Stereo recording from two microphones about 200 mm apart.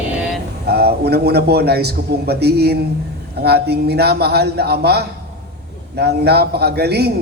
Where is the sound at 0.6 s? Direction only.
55° right (ahead or behind).